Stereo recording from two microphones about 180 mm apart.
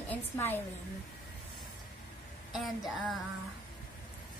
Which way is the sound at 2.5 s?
Centre (ahead or behind).